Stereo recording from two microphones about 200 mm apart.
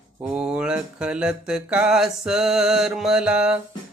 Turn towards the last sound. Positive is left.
turn(degrees=-5)  # may be behind; listen again after turning